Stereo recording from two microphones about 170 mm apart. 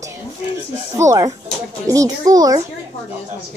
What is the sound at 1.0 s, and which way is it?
Speech, 20° right (ahead or behind).